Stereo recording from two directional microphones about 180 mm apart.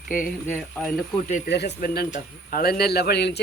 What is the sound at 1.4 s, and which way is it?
Speech, 70° left (ahead or behind).